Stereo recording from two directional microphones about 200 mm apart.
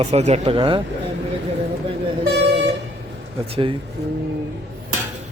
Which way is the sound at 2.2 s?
55° right (ahead or behind).